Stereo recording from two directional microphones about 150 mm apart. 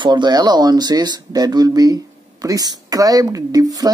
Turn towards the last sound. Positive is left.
turn(degrees=-25)  # may be behind; listen again after turning